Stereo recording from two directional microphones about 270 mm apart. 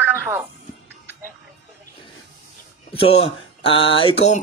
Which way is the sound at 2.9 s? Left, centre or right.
Left.